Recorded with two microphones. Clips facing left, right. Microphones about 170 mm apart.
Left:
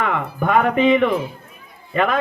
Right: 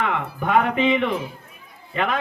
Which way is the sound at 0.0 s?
45° left (ahead or behind).